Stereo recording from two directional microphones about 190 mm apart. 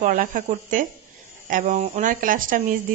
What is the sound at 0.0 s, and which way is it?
A woman's voice, 45° right (ahead or behind).